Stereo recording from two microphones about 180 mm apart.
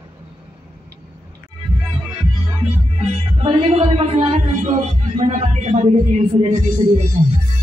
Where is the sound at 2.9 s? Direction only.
30° right (ahead or behind).